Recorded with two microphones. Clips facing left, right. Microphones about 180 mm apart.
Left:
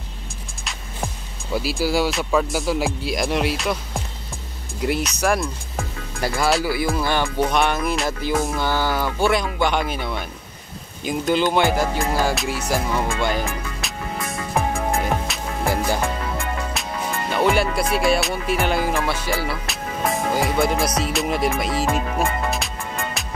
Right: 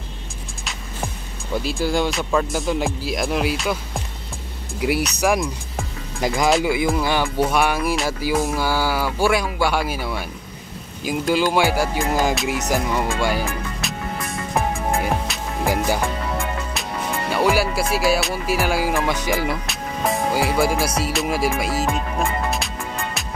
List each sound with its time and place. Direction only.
0.7 s speech: 5° left (ahead or behind); by 13.4 s 10° right (ahead or behind)
15.3 s music: centre (ahead or behind)
15.6 s music: 15° right (ahead or behind)
16.8 s music: centre (ahead or behind)
17.3 s speech: 5° right (ahead or behind)
19.6 s music: centre (ahead or behind)